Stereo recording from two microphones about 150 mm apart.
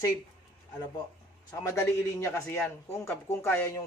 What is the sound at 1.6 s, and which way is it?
A man's voice, 20° left (ahead or behind).